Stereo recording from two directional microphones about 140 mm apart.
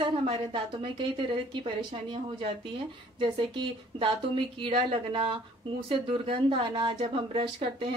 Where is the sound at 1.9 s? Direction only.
35° right (ahead or behind).